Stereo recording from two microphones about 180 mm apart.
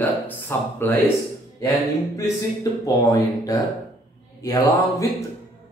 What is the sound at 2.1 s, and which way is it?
Speech, 20° left (ahead or behind).